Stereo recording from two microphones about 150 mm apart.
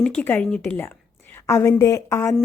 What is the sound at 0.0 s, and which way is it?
A woman's voice, 10° left (ahead or behind).